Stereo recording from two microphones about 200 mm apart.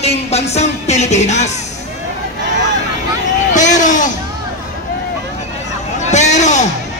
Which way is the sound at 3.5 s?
35° left (ahead or behind).